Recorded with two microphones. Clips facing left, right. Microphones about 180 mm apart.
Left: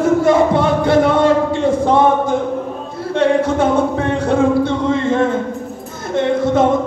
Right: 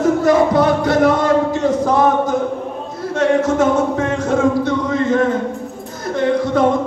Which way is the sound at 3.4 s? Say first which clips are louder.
Even; 30° left (ahead or behind).